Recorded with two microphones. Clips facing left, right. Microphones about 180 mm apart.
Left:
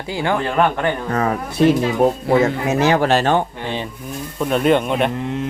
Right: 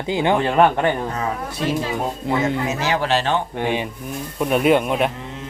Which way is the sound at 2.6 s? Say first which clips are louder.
Left 5 dB; 55° left (ahead or behind).